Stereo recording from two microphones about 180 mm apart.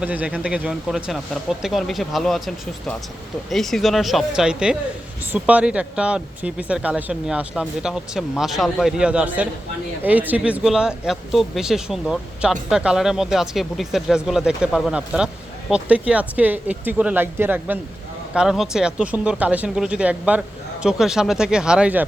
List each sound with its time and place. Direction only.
0.0 s speech: 10° right (ahead or behind)
3.5 s speech: centre (ahead or behind)